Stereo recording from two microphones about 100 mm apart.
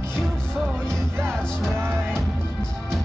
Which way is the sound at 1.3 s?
5° left (ahead or behind).